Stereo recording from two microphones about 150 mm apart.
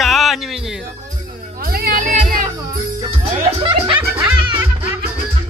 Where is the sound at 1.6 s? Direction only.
80° right; by 2.5 s 60° right (ahead or behind).